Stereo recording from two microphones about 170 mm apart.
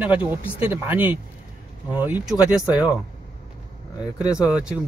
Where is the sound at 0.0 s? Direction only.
10° right (ahead or behind).